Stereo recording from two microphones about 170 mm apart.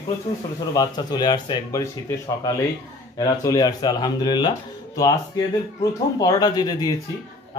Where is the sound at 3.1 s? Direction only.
20° left (ahead or behind).